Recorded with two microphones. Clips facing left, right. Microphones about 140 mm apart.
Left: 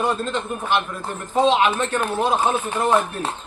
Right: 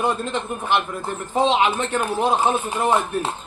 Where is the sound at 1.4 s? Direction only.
20° right (ahead or behind).